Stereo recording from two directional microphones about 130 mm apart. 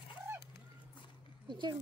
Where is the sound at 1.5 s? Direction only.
35° right (ahead or behind).